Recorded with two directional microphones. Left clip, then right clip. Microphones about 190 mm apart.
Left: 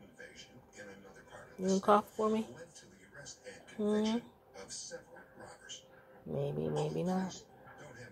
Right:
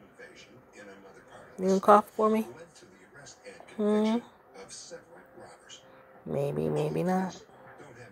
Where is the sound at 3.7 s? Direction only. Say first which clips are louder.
Right 7 dB; 25° right (ahead or behind).